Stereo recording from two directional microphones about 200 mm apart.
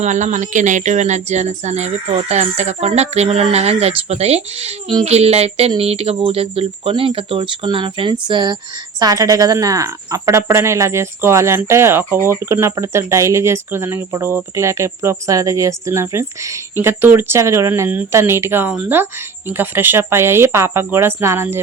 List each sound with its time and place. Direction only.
0.0 s speech: 35° right (ahead or behind); by 21.6 s 10° right (ahead or behind)